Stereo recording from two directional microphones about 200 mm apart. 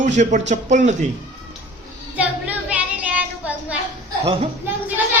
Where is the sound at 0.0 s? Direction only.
40° right (ahead or behind).